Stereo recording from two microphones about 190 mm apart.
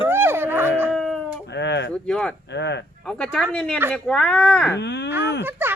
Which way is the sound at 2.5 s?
65° left (ahead or behind).